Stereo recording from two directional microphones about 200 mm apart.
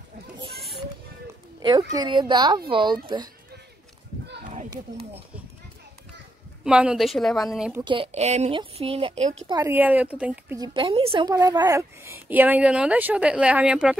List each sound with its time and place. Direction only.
1.6 s speech: 20° right (ahead or behind)
6.6 s a woman's voice: 5° right (ahead or behind)
7.8 s speech: 25° right (ahead or behind)
9.5 s a woman's voice: 15° right (ahead or behind)
10.6 s a woman's voice: 25° right (ahead or behind); by 13.9 s 5° right (ahead or behind)